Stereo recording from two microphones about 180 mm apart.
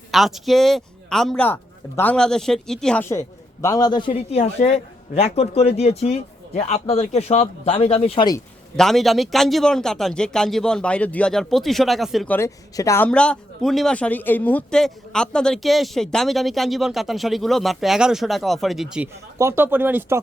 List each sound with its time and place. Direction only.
0.1 s a man's voice: centre (ahead or behind); by 8.3 s 35° left (ahead or behind)
8.7 s speech: centre (ahead or behind)
12.4 s a man's voice: 15° left (ahead or behind)
13.1 s speech: 5° left (ahead or behind)
19.4 s speech: 15° right (ahead or behind)